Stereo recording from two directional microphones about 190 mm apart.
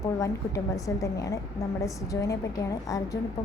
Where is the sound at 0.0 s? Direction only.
15° left (ahead or behind).